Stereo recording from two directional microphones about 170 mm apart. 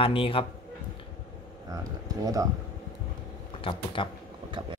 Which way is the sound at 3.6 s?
30° left (ahead or behind).